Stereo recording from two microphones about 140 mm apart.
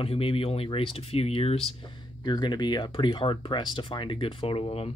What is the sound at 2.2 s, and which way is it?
Speech, 30° left (ahead or behind).